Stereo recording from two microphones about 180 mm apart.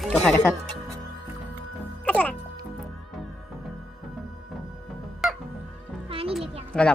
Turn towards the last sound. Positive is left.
turn(degrees=5)  # may be behind; listen again after turning